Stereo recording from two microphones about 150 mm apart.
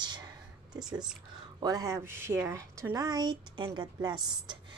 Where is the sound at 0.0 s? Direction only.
30° right (ahead or behind).